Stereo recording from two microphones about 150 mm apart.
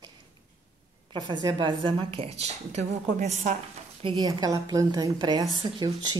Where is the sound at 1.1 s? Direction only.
30° right (ahead or behind); by 3.6 s 50° right (ahead or behind).